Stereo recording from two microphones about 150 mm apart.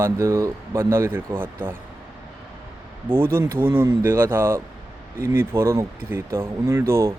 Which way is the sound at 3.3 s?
15° right (ahead or behind).